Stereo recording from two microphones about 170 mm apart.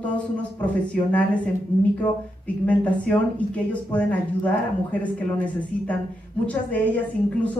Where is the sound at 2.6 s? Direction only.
10° left (ahead or behind).